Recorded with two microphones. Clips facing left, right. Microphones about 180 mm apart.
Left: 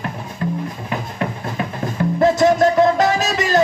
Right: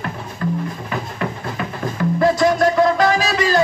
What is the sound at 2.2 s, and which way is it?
Music, 20° left (ahead or behind).